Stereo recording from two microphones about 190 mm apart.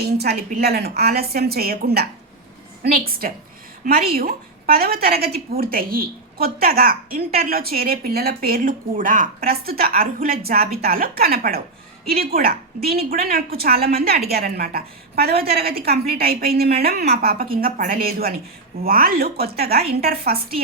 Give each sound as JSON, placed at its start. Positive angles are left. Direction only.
{"t": 0.0, "sound": "a woman's voice", "side_deg": -55}